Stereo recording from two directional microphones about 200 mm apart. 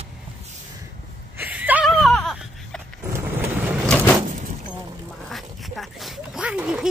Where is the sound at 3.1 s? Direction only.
10° right (ahead or behind).